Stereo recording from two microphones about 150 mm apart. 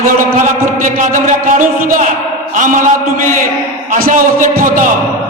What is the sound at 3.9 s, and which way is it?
Speech, 70° right (ahead or behind).